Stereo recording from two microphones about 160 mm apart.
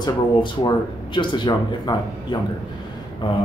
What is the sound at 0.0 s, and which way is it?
Speech, 30° left (ahead or behind).